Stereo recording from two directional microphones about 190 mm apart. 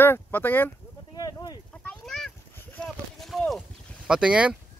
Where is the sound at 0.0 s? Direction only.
10° left (ahead or behind).